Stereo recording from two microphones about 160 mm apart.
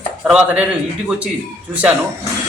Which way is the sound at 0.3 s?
5° right (ahead or behind).